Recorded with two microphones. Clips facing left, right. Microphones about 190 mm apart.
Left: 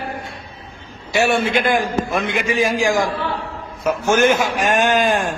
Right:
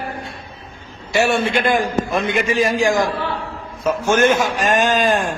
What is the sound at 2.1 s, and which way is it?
Speech, 25° right (ahead or behind).